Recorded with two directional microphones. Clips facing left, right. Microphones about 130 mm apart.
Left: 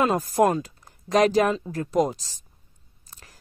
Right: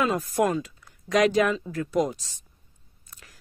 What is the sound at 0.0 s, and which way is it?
A woman's voice, 40° left (ahead or behind).